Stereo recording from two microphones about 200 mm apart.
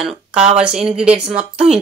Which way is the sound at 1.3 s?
35° right (ahead or behind).